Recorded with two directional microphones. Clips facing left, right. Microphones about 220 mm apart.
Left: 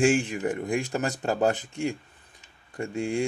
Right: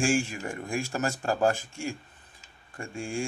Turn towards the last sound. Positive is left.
turn(degrees=20)  # may be behind; listen again after turning